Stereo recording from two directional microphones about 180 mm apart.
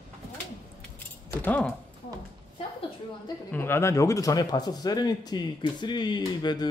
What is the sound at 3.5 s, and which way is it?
A man's voice, 10° left (ahead or behind).